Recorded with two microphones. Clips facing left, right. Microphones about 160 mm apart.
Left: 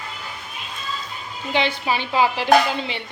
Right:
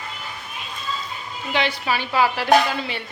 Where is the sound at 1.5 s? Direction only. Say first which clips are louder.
Left 1 dB; 25° left (ahead or behind).